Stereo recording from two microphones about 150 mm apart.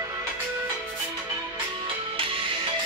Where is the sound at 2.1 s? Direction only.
35° right (ahead or behind).